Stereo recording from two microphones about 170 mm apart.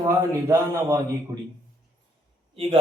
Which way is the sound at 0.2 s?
20° right (ahead or behind).